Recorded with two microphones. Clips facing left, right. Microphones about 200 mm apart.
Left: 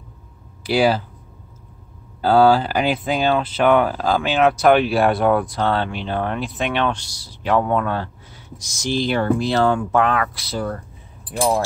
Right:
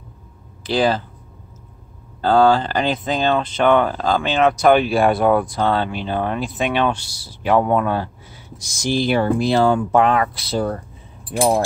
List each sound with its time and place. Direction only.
0.7 s speech: 10° left (ahead or behind)
2.2 s speech: 5° left (ahead or behind); by 10.8 s 25° right (ahead or behind)